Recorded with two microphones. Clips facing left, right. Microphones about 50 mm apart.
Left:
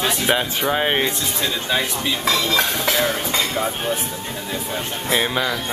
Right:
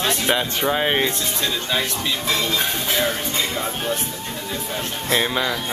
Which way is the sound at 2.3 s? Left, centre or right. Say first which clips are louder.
Left 3 dB; left.